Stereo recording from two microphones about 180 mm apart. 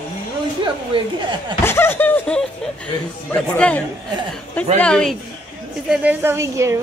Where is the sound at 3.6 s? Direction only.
5° left (ahead or behind).